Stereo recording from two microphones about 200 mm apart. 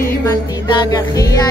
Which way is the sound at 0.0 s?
15° left (ahead or behind).